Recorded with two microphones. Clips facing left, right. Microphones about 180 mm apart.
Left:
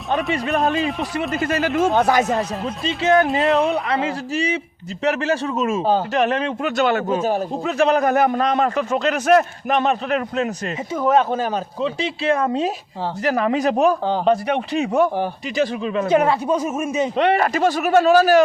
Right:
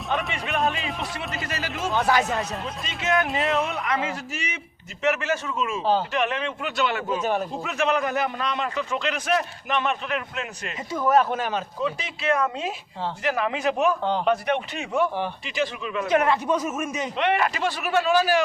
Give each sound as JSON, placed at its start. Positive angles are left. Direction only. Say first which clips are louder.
{"t": 0.6, "sound": "speech", "louder": "left 6 dB", "side_deg": 0}
{"t": 1.3, "sound": "a man's voice", "louder": "left 10 dB", "side_deg": 50}
{"t": 2.8, "sound": "a man's voice", "louder": "left 9 dB", "side_deg": 30}
{"t": 3.2, "sound": "speech", "louder": "left 7 dB", "side_deg": 0}
{"t": 3.8, "sound": "a man's voice", "louder": "left 5 dB", "side_deg": 30}
{"t": 10.9, "sound": "a man's voice", "louder": "left 3 dB", "side_deg": 20}